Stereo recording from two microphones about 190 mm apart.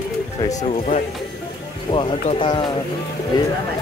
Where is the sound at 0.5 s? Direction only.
35° left (ahead or behind).